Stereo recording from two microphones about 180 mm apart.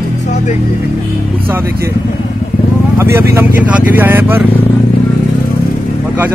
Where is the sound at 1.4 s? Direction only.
10° right (ahead or behind).